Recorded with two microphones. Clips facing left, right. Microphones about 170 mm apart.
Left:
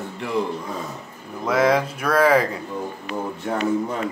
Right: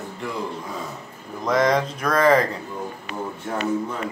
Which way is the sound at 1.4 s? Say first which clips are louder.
Left 1 dB; 5° left (ahead or behind).